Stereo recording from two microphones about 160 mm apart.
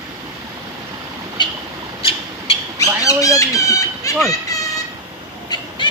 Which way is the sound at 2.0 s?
35° left (ahead or behind).